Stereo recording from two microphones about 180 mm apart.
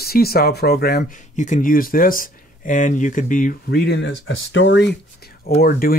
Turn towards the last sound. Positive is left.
turn(degrees=55)  # may be behind; listen again after turning